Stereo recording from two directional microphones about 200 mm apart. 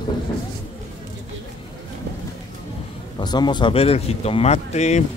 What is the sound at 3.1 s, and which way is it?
Speech, 20° left (ahead or behind).